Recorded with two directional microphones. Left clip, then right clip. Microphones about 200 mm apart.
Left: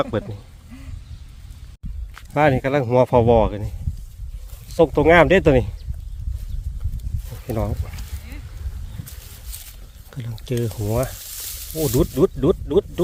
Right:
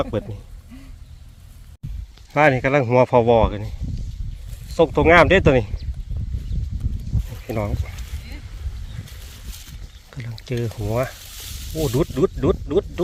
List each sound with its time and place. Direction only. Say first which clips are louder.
0.0 s speech: left 1 dB; centre (ahead or behind)
2.3 s speech: right 2 dB; 5° left (ahead or behind)
7.3 s a sound: even; 5° left (ahead or behind)
10.1 s speech: left 2 dB; 20° left (ahead or behind)